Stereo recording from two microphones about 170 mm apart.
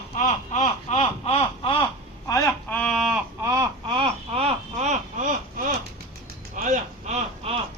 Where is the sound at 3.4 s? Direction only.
15° right (ahead or behind).